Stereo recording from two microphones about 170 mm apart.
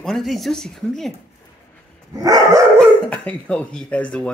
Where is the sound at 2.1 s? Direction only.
20° right (ahead or behind).